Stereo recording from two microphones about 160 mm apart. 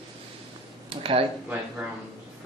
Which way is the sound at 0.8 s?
35° right (ahead or behind).